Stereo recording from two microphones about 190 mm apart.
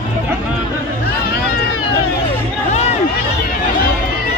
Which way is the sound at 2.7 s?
35° left (ahead or behind).